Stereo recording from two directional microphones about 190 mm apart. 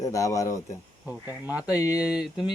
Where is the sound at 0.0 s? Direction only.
15° left (ahead or behind).